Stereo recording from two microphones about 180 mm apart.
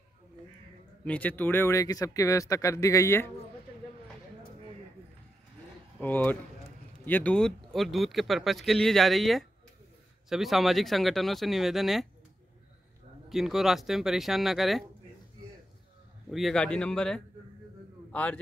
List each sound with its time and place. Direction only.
1.0 s speech: 10° left (ahead or behind)
5.9 s a man's voice: 10° left (ahead or behind)
13.3 s speech: centre (ahead or behind)
16.3 s a man's voice: centre (ahead or behind)